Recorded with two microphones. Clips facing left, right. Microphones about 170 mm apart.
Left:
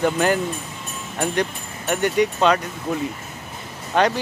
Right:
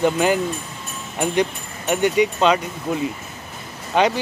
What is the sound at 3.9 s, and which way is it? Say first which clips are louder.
Speech: right 1 dB; 10° right (ahead or behind).